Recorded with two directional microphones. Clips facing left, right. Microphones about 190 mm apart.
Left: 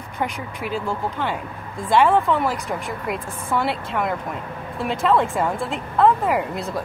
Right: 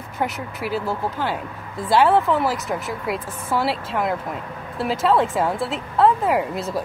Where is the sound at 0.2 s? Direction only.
5° right (ahead or behind).